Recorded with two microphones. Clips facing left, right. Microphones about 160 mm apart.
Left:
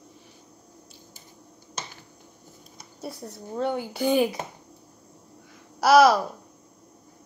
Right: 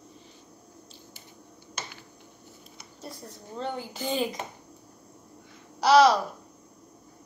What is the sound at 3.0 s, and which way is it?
Speech, 10° left (ahead or behind).